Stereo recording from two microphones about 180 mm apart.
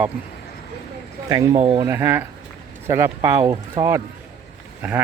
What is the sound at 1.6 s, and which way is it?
Speech, 30° right (ahead or behind).